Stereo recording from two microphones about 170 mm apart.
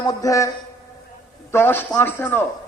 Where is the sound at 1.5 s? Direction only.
15° left (ahead or behind).